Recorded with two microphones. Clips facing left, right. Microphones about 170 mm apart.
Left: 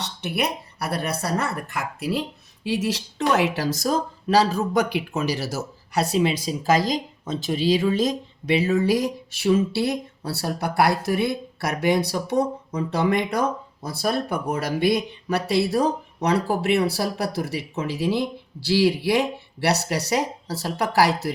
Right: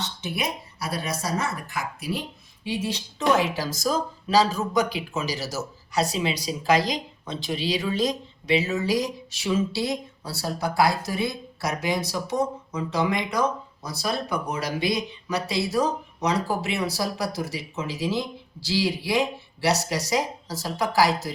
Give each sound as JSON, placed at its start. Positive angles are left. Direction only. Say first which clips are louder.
{"t": 0.0, "sound": "speech", "louder": "left 3 dB", "side_deg": 65}
{"t": 2.6, "sound": "speech", "louder": "left 4 dB", "side_deg": 90}